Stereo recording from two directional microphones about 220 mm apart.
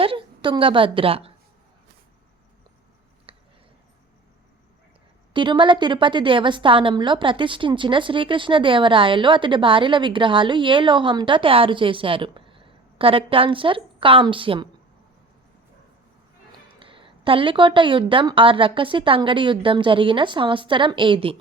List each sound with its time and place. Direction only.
0.0 s a woman's voice: 25° right (ahead or behind)
3.3 s a sound: 25° right (ahead or behind)
5.3 s a woman's voice: 20° right (ahead or behind)
16.5 s a woman's voice: 25° right (ahead or behind)